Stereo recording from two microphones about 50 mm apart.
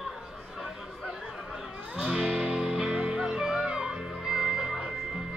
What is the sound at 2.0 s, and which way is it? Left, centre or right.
Music, centre.